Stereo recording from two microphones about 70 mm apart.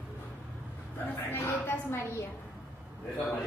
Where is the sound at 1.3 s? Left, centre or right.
Left.